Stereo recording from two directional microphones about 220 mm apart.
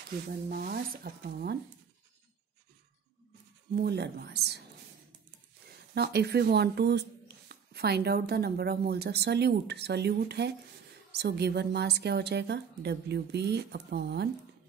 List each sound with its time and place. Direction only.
0.3 s speech: 45° right (ahead or behind)
3.7 s speech: 50° right (ahead or behind)
5.9 s speech: 50° right (ahead or behind)